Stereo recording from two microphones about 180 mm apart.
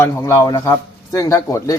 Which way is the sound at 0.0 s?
15° left (ahead or behind).